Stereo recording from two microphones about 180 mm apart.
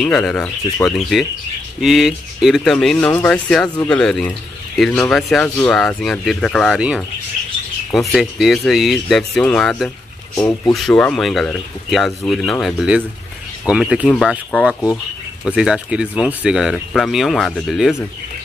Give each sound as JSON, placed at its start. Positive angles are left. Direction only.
{"t": 0.0, "sound": "speech", "side_deg": 5}
{"t": 10.3, "sound": "speech", "side_deg": 15}
{"t": 10.7, "sound": "speech", "side_deg": 5}